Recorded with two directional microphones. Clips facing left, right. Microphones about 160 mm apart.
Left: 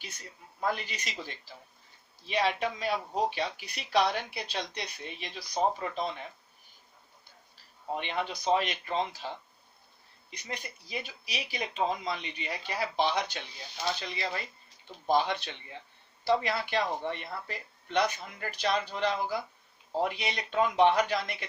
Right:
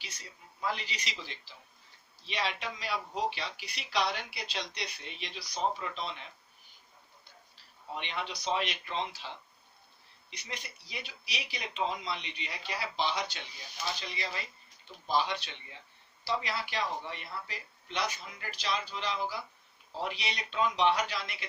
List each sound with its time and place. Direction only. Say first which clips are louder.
0.0 s speech: left 3 dB; 50° left (ahead or behind)
7.9 s speech: left 4 dB; 45° left (ahead or behind)